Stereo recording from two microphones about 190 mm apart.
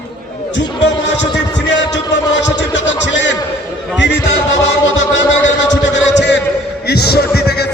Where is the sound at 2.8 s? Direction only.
70° left (ahead or behind).